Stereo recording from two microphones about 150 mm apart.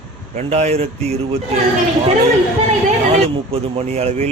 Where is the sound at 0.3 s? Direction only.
50° right (ahead or behind).